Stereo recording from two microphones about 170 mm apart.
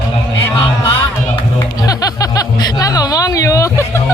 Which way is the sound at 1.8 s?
20° left (ahead or behind).